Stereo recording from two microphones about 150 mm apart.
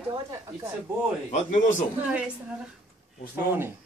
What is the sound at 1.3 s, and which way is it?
Speech, 60° left (ahead or behind).